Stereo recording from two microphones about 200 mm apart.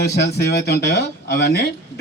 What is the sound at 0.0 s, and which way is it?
Speech, 55° left (ahead or behind).